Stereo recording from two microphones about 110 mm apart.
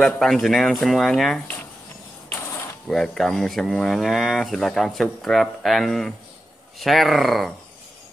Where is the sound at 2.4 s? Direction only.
25° left (ahead or behind).